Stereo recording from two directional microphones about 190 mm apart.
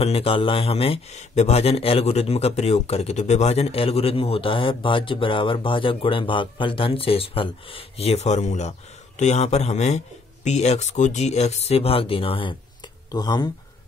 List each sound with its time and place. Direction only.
0.0 s a man's voice: 30° left (ahead or behind)